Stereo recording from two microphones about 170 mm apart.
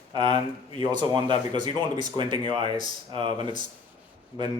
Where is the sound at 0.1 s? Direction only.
30° right (ahead or behind).